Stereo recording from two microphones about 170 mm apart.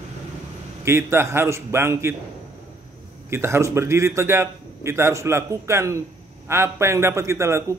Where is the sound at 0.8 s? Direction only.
15° right (ahead or behind).